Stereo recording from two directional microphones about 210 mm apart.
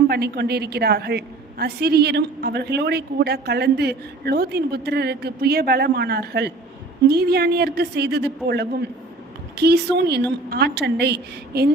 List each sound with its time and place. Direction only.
0.1 s a woman's voice: 50° right (ahead or behind)